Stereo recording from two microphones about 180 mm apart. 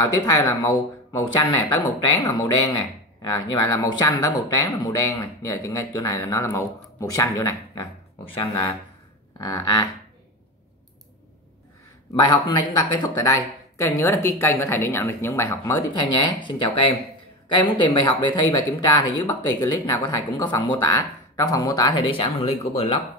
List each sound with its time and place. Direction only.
0.0 s speech: 20° left (ahead or behind)
12.9 s speech: 20° left (ahead or behind); by 22.7 s 35° left (ahead or behind)